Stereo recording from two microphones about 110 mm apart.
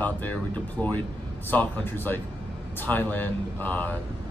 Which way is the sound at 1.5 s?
15° left (ahead or behind).